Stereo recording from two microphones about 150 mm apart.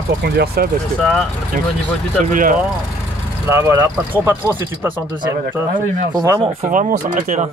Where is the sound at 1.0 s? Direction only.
5° left (ahead or behind).